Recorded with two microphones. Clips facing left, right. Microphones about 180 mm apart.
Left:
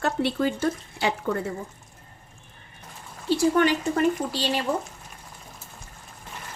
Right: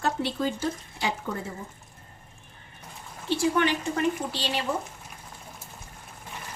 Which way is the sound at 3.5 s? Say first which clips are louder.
Left 4 dB; 40° left (ahead or behind).